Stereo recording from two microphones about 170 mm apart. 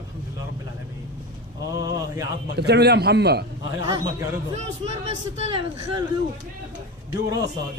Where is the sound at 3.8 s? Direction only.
20° right (ahead or behind).